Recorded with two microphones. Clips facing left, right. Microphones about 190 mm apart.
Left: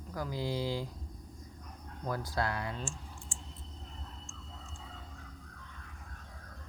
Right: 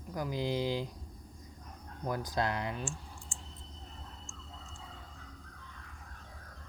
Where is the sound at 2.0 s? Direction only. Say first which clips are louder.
Right 1 dB; 20° right (ahead or behind).